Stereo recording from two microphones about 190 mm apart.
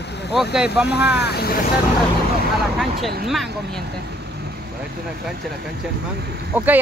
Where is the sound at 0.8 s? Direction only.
60° left (ahead or behind).